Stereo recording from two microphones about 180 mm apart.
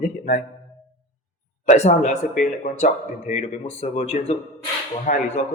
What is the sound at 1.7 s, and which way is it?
A man's voice, 40° left (ahead or behind).